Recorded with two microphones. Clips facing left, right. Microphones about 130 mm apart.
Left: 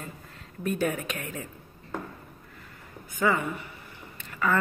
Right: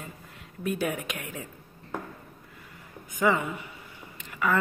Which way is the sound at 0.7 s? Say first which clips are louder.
Left 1 dB; 10° right (ahead or behind).